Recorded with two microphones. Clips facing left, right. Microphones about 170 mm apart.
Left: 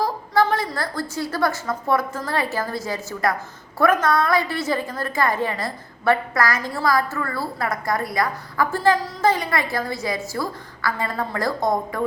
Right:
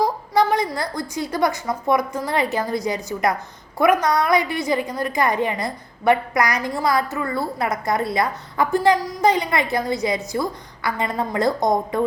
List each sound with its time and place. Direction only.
0.0 s a woman's voice: 15° right (ahead or behind)